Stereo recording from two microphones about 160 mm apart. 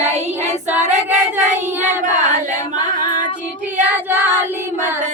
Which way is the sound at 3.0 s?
55° right (ahead or behind).